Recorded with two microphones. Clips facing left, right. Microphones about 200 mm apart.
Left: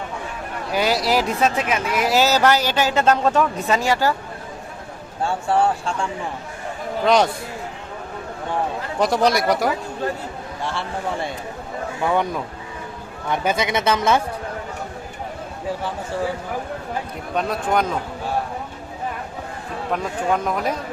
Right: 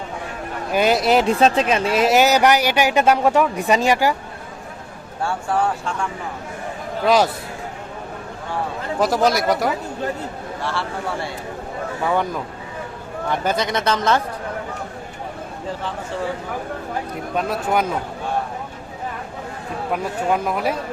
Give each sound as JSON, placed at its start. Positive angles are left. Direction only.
{"t": 0.7, "sound": "speech", "side_deg": -20}
{"t": 5.2, "sound": "speech", "side_deg": 30}
{"t": 7.0, "sound": "speech", "side_deg": -5}
{"t": 9.0, "sound": "speech", "side_deg": 0}
{"t": 10.6, "sound": "speech", "side_deg": 20}
{"t": 13.4, "sound": "speech", "side_deg": 5}
{"t": 17.3, "sound": "speech", "side_deg": -5}
{"t": 19.9, "sound": "speech", "side_deg": -5}